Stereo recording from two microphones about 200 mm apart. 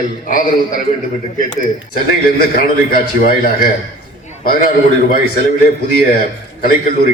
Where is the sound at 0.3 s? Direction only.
40° left (ahead or behind).